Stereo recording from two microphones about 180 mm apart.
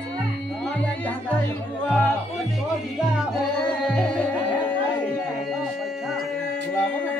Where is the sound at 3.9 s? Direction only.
5° left (ahead or behind).